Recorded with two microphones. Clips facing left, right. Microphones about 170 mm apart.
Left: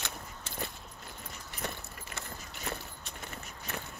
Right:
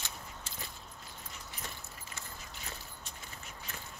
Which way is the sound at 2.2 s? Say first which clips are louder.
Left 6 dB; 70° left (ahead or behind).